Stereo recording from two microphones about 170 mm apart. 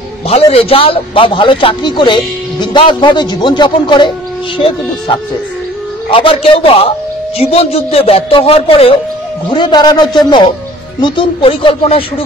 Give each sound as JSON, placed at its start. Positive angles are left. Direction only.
{"t": 0.3, "sound": "a man's voice", "side_deg": 35}